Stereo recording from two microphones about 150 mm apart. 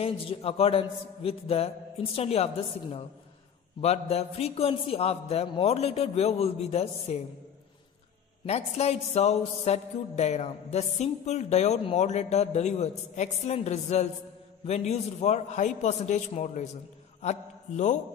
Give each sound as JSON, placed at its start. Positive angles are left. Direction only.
{"t": 0.0, "sound": "speech", "side_deg": 40}
{"t": 3.8, "sound": "music", "side_deg": 45}
{"t": 8.5, "sound": "music", "side_deg": 45}
{"t": 17.2, "sound": "a sound", "side_deg": 50}